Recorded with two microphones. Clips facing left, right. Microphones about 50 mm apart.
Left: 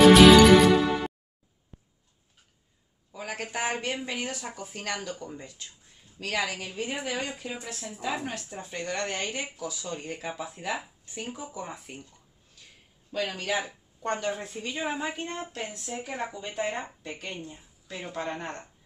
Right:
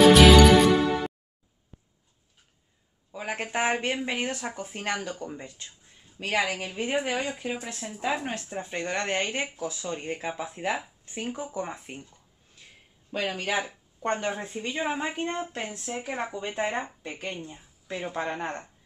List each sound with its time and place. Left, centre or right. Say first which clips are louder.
0.0 s music: left 1 dB; centre
3.1 s a man's voice: right 3 dB; right
13.1 s speech: right 1 dB; right
14.7 s a woman's voice: right 2 dB; centre